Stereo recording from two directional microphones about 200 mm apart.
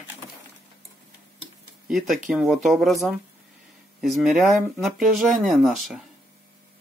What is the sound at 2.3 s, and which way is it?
Speech, centre (ahead or behind).